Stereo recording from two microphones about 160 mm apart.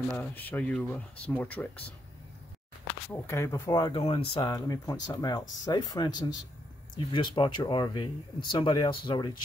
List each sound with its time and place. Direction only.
0.2 s speech: 10° left (ahead or behind)
3.1 s speech: 15° left (ahead or behind)
4.0 s speech: 35° left (ahead or behind)
4.5 s speech: 20° left (ahead or behind)